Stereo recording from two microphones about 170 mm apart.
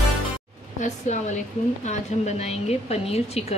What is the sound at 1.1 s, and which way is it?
A woman's voice, 45° left (ahead or behind).